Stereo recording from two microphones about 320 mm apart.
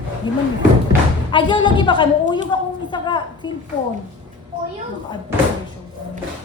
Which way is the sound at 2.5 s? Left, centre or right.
Centre.